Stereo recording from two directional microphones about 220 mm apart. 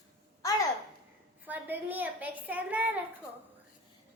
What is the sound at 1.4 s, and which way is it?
A woman's voice, 10° right (ahead or behind).